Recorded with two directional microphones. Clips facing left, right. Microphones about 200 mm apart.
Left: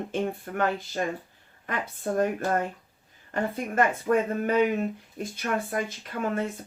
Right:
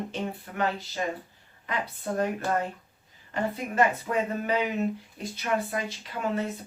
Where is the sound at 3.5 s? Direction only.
50° left (ahead or behind).